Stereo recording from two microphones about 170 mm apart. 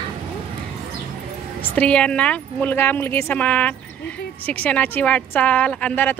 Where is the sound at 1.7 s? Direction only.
5° left (ahead or behind).